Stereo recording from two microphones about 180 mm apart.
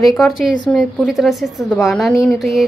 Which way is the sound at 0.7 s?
Centre (ahead or behind).